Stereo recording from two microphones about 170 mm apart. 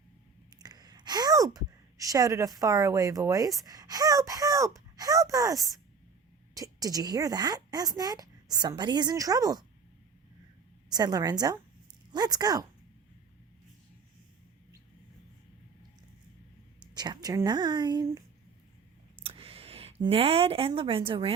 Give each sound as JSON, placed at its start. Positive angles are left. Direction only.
{"t": 0.6, "sound": "a woman's voice", "side_deg": -25}
{"t": 10.9, "sound": "a woman's voice", "side_deg": -20}
{"t": 16.9, "sound": "a woman's voice", "side_deg": -25}
{"t": 19.2, "sound": "speech", "side_deg": -35}